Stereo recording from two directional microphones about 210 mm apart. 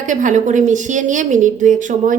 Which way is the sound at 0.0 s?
35° right (ahead or behind).